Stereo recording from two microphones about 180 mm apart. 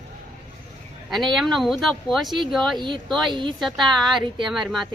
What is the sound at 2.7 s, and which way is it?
Speech, 25° right (ahead or behind).